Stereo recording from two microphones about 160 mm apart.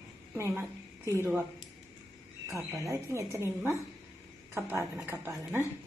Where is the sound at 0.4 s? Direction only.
15° right (ahead or behind).